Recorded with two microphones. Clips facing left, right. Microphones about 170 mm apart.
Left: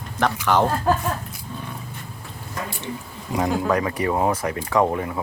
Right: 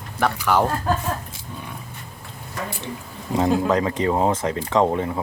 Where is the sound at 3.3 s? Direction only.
25° right (ahead or behind).